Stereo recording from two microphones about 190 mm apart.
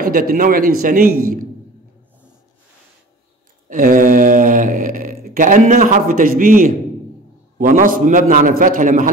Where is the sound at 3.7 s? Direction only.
45° right (ahead or behind).